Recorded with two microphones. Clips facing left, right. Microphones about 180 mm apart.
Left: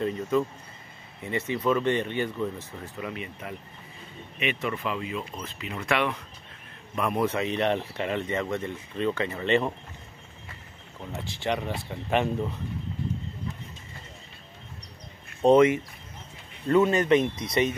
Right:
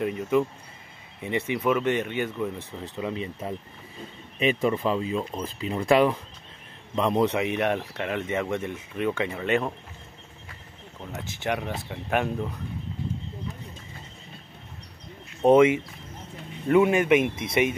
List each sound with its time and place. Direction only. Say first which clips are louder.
0.0 s speech: right 2 dB; 15° right (ahead or behind)
7.8 s speech: even; centre (ahead or behind)
11.1 s speech: even; centre (ahead or behind)
15.4 s speech: right 1 dB; 10° right (ahead or behind)